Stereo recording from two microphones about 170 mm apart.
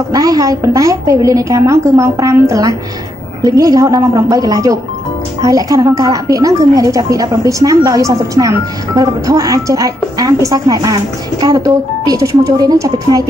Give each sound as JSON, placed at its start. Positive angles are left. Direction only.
{"t": 0.1, "sound": "a woman's voice", "side_deg": -20}